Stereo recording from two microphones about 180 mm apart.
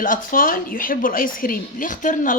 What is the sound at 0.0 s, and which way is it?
Speech, 50° left (ahead or behind).